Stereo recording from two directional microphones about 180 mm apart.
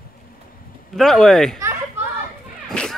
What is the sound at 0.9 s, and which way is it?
Speech, centre (ahead or behind).